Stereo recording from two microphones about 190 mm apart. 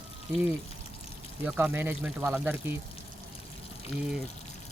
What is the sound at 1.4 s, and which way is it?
Speech, 10° right (ahead or behind).